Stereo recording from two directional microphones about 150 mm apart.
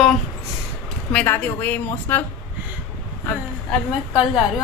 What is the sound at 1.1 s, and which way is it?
Speech, 10° left (ahead or behind).